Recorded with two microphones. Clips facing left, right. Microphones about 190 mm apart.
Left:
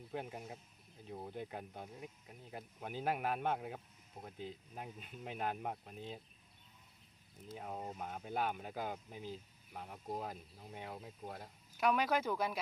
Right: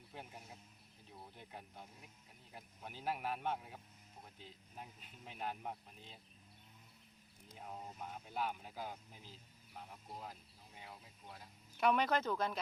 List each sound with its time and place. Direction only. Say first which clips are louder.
0.1 s speech: left 9 dB; 60° left (ahead or behind)
7.6 s speech: left 4 dB; 60° left (ahead or behind)
11.8 s speech: even; 5° left (ahead or behind)